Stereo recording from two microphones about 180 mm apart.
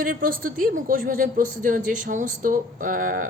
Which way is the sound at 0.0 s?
50° right (ahead or behind).